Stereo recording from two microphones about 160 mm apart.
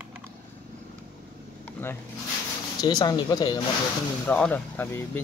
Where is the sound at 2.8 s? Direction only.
25° left (ahead or behind).